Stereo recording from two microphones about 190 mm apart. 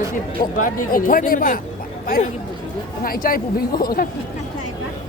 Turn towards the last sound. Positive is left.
turn(degrees=50)  # may be behind; listen again after turning